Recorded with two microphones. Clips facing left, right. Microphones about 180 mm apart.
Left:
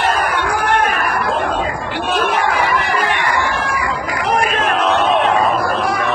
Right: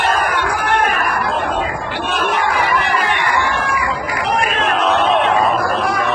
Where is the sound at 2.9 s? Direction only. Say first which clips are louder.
Even; 45° left (ahead or behind).